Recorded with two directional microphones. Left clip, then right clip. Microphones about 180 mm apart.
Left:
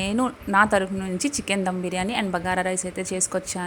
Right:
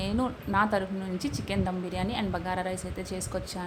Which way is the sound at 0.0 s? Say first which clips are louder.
Left 6 dB; 20° left (ahead or behind).